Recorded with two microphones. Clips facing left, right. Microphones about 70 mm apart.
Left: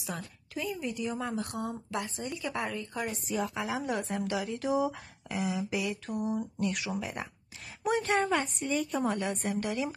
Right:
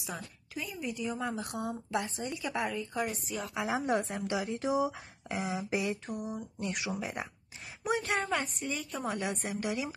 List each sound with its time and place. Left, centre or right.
0.0 s a woman's voice: centre
2.0 s speech: right; by 3.6 s centre
3.6 s speech: right
5.3 s speech: right
6.0 s a woman's voice: centre